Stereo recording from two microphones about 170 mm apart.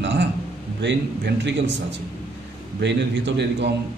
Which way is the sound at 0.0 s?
90° right.